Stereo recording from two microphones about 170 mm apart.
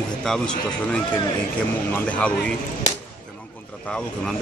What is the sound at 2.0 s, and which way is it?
Speech, 5° left (ahead or behind).